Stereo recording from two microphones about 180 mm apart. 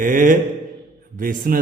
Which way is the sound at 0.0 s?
50° right (ahead or behind).